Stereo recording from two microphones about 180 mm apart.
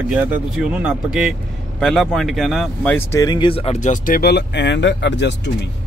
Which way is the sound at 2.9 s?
20° left (ahead or behind).